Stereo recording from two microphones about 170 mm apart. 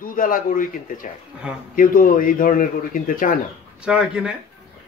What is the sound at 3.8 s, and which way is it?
Speech, 5° right (ahead or behind).